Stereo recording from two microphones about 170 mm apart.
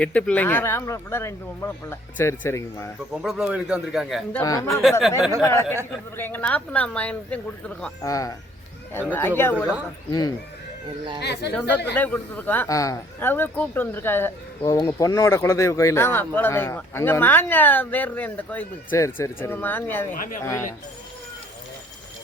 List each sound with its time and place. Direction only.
0.0 s speech: 5° left (ahead or behind)
3.2 s a man's voice: 5° right (ahead or behind)
4.4 s speech: 20° left (ahead or behind)
4.8 s a man's voice: centre (ahead or behind)
5.4 s speech: 15° left (ahead or behind)
8.0 s speech: 20° left (ahead or behind)
10.1 s speech: 25° left (ahead or behind)
11.2 s speech: 80° left
11.9 s speech: 10° left (ahead or behind)
20.1 s speech: 55° left (ahead or behind)
20.4 s speech: 15° left (ahead or behind)